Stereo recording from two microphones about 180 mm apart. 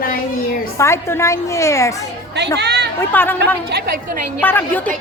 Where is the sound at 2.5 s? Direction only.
65° right (ahead or behind).